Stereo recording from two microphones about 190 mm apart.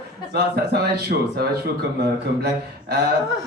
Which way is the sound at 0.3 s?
55° right (ahead or behind).